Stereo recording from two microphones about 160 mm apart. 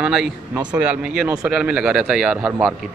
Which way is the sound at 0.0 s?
5° right (ahead or behind).